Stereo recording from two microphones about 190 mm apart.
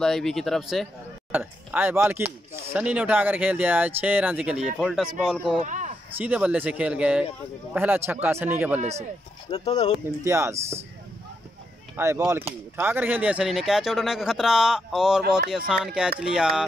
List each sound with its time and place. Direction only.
0.0 s speech: centre (ahead or behind)
5.6 s a sound: 40° right (ahead or behind)
6.1 s speech: 5° right (ahead or behind)
9.5 s speech: 20° left (ahead or behind)
10.2 s speech: 15° right (ahead or behind)
12.0 s speech: 15° right (ahead or behind)